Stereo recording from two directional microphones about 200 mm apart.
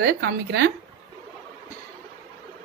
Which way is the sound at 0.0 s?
50° right (ahead or behind).